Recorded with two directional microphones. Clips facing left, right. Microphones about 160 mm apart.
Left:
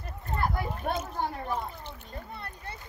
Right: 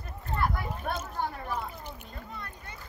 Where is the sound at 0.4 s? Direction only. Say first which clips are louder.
Left 1 dB; 30° left (ahead or behind).